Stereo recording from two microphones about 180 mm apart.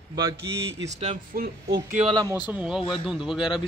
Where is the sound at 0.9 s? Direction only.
40° right (ahead or behind).